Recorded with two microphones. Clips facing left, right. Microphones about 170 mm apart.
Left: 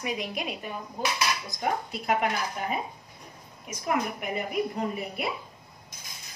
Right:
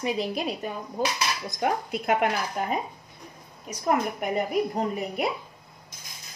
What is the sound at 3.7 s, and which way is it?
A woman's voice, 40° right (ahead or behind).